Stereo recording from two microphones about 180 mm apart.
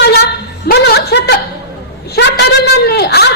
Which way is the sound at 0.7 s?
65° left (ahead or behind).